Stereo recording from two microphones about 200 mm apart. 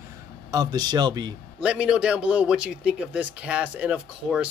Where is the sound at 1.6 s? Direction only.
5° right (ahead or behind).